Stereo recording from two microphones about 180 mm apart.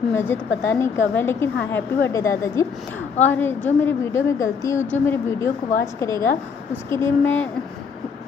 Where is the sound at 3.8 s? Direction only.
15° left (ahead or behind).